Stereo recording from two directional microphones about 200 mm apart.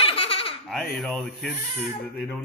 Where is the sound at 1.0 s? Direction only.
Centre (ahead or behind).